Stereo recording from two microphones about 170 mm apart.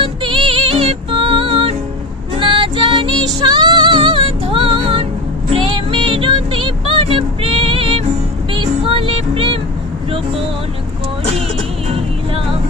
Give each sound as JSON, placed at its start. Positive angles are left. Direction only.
{"t": 0.0, "sound": "music", "side_deg": -30}
{"t": 11.9, "sound": "music", "side_deg": -35}